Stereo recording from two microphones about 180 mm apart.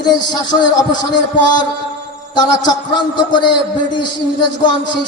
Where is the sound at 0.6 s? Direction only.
25° left (ahead or behind).